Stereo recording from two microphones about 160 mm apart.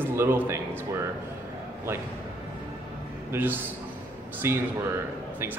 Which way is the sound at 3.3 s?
15° right (ahead or behind).